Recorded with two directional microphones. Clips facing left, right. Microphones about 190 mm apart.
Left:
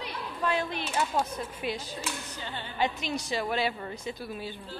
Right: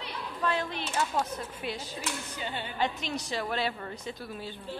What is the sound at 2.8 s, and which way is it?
A woman's voice, 10° left (ahead or behind).